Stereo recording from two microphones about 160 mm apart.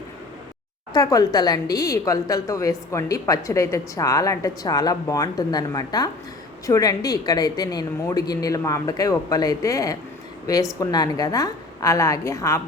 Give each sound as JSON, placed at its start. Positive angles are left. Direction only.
{"t": 0.9, "sound": "a woman's voice", "side_deg": 25}